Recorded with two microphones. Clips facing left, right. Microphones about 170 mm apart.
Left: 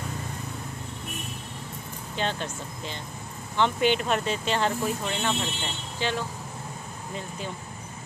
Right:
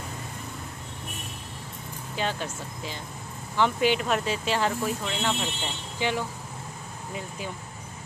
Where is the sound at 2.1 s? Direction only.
5° right (ahead or behind).